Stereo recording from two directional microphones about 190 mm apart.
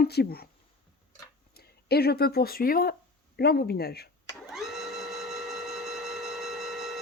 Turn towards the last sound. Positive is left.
turn(degrees=0)  # may be behind; listen again after turning